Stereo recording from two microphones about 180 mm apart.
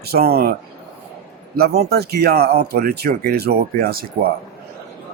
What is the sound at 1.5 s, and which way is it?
A man's voice, 60° right (ahead or behind).